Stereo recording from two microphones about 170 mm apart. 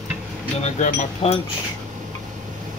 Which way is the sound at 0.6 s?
45° left (ahead or behind).